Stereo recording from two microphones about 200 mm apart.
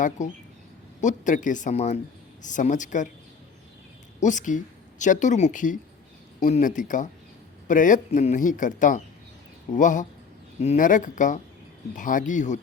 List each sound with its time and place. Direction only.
0.2 s speech: 35° left (ahead or behind)
4.2 s a woman's voice: 40° left (ahead or behind)